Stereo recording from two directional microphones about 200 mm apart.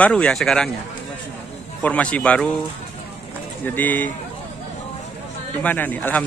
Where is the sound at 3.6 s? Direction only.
10° left (ahead or behind).